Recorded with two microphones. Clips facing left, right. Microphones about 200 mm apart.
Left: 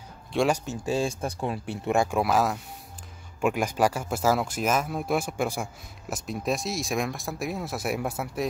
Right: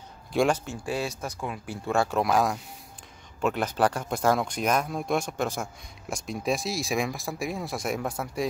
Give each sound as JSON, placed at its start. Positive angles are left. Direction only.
{"t": 0.3, "sound": "speech", "side_deg": 0}
{"t": 0.8, "sound": "speech", "side_deg": 25}
{"t": 1.9, "sound": "speech", "side_deg": 15}